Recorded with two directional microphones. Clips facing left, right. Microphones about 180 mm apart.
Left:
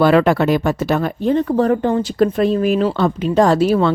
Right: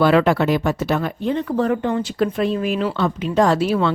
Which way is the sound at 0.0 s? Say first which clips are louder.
Left 2 dB; 45° left (ahead or behind).